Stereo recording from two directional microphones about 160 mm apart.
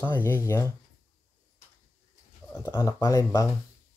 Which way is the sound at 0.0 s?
15° left (ahead or behind).